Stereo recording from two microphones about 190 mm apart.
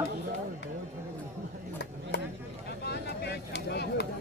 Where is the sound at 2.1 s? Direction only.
65° left (ahead or behind).